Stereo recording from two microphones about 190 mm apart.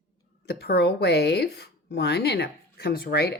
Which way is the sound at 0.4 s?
60° left (ahead or behind).